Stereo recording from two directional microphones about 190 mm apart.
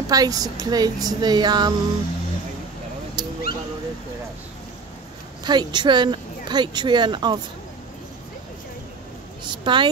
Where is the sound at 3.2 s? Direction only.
20° right (ahead or behind).